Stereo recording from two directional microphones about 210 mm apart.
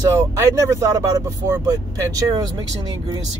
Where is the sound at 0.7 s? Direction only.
15° right (ahead or behind).